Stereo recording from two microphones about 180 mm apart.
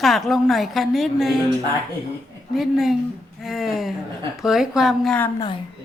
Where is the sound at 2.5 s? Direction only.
Centre (ahead or behind).